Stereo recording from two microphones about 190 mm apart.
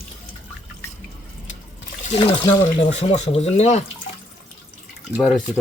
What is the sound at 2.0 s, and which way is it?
Speech, 30° left (ahead or behind).